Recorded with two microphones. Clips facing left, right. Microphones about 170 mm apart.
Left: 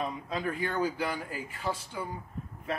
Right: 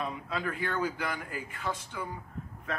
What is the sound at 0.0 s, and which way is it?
Speech, 35° left (ahead or behind).